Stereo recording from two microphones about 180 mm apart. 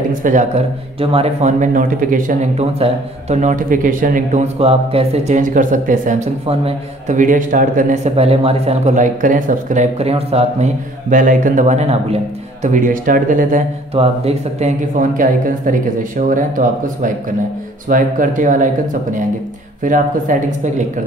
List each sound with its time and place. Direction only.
0.1 s speech: 45° right (ahead or behind)
11.1 s speech: 45° right (ahead or behind)
12.6 s speech: 45° right (ahead or behind)
13.9 s speech: 35° right (ahead or behind)
19.8 s speech: 45° right (ahead or behind)